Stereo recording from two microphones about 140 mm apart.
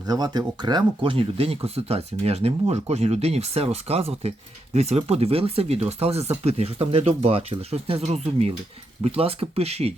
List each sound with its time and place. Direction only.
0.1 s speech: 30° right (ahead or behind); by 9.9 s 45° right (ahead or behind)